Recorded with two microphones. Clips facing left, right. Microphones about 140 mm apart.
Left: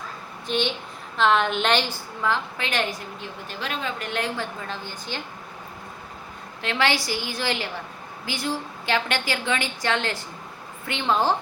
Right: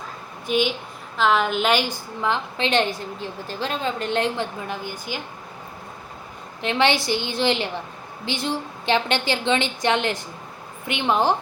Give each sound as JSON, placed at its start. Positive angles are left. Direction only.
{"t": 0.4, "sound": "a woman's voice", "side_deg": -10}
{"t": 6.6, "sound": "a woman's voice", "side_deg": -20}